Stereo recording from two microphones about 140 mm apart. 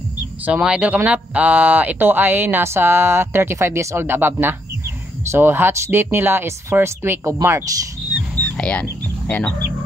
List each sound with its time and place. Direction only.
0.5 s speech: 10° right (ahead or behind)
8.5 s speech: 10° left (ahead or behind)